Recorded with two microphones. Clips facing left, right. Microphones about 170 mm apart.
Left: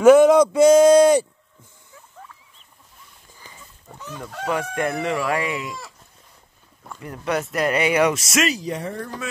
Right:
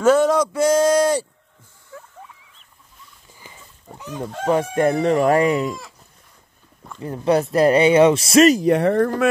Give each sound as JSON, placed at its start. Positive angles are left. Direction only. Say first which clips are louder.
{"t": 0.0, "sound": "a sound", "louder": "left 4 dB", "side_deg": 15}
{"t": 3.3, "sound": "pig", "louder": "right 1 dB", "side_deg": -15}
{"t": 4.5, "sound": "chicken", "louder": "right 6 dB", "side_deg": -30}
{"t": 7.0, "sound": "speech", "louder": "right 7 dB", "side_deg": -30}
{"t": 8.5, "sound": "speech", "louder": "right 11 dB", "side_deg": -55}